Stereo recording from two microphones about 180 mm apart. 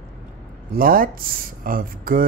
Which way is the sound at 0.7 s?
55° right (ahead or behind).